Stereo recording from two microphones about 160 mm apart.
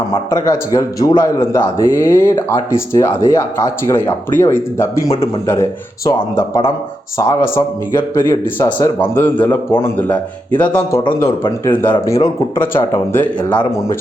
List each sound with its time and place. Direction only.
0.3 s speech: 20° left (ahead or behind)
13.5 s speech: 30° left (ahead or behind)